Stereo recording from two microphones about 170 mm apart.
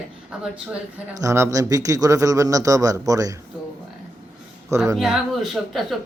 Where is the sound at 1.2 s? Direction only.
20° right (ahead or behind).